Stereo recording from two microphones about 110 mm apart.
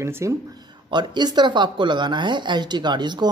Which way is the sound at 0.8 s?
45° right (ahead or behind).